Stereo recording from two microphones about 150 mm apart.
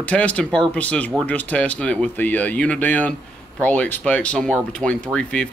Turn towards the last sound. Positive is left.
turn(degrees=5)  # may be behind; listen again after turning